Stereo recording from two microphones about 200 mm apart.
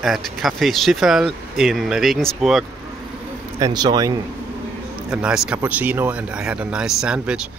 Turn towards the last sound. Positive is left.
turn(degrees=-5)  # may be behind; listen again after turning